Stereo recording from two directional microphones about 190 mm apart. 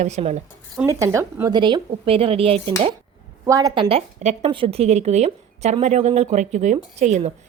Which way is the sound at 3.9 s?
30° right (ahead or behind).